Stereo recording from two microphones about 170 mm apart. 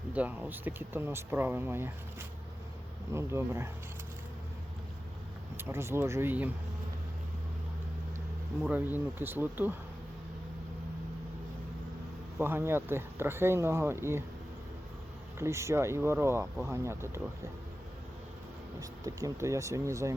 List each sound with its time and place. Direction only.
0.1 s speech: 10° right (ahead or behind)
5.5 s speech: 15° right (ahead or behind)
8.6 s speech: 10° right (ahead or behind)
12.4 s speech: 15° right (ahead or behind)
15.4 s speech: 15° right (ahead or behind)
18.8 s speech: 20° right (ahead or behind)